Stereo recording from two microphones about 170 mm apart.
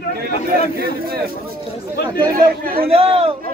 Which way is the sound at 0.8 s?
65° right (ahead or behind).